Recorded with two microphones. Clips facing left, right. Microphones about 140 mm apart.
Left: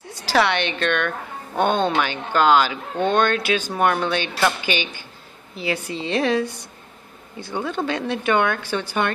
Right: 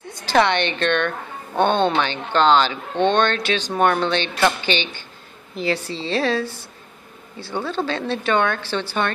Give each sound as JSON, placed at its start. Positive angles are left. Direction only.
{"t": 0.2, "sound": "speech", "side_deg": 5}